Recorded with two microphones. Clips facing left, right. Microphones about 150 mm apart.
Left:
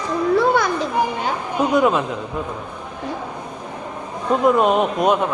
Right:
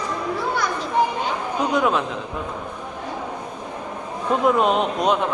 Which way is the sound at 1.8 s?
5° left (ahead or behind).